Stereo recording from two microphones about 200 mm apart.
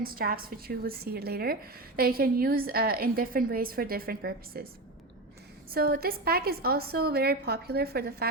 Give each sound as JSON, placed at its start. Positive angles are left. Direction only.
{"t": 0.0, "sound": "a woman's voice", "side_deg": -45}
{"t": 5.7, "sound": "a woman's voice", "side_deg": -50}